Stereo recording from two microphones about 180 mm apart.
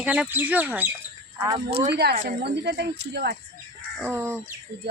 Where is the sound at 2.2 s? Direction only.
70° right (ahead or behind).